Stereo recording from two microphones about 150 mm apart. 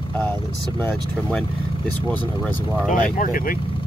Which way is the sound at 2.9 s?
65° left (ahead or behind).